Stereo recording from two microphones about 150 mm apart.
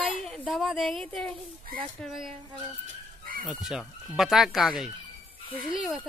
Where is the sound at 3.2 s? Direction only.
70° right (ahead or behind).